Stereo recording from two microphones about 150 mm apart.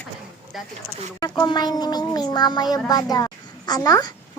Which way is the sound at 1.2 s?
25° left (ahead or behind).